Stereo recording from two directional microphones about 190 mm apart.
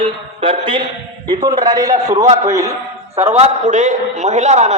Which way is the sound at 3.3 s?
35° right (ahead or behind).